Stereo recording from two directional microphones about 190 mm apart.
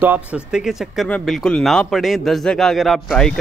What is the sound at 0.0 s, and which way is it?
Speech, 5° right (ahead or behind).